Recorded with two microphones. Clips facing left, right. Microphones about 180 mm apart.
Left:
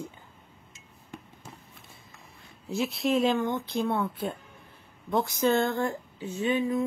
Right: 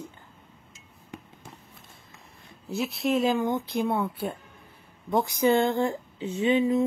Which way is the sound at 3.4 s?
15° right (ahead or behind).